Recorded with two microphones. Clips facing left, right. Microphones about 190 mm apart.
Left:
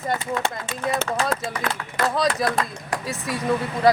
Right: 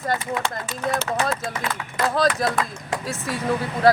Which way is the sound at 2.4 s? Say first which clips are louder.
Even; centre (ahead or behind).